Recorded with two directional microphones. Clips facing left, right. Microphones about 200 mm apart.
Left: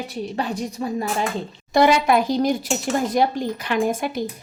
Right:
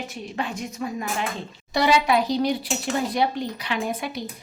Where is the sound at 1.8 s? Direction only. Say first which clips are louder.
Left 4 dB; 50° left (ahead or behind).